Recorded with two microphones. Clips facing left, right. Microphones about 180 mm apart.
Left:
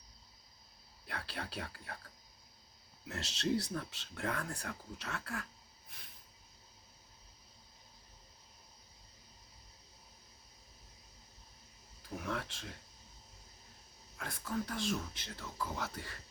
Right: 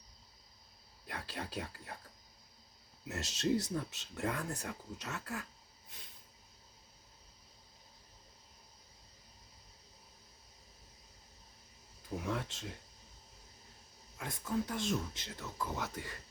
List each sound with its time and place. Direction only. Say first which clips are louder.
1.1 s speech: right 1 dB; 15° right (ahead or behind)
3.1 s speech: right 2 dB; 15° right (ahead or behind)
12.2 s speech: right 1 dB; 20° right (ahead or behind)
14.2 s speech: right 2 dB; 20° right (ahead or behind)